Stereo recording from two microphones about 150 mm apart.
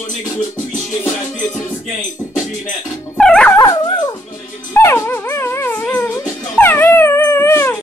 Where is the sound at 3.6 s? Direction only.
25° left (ahead or behind).